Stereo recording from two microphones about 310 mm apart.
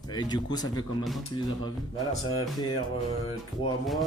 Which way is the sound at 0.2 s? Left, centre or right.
Centre.